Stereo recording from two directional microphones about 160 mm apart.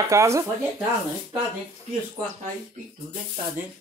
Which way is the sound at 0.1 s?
20° right (ahead or behind).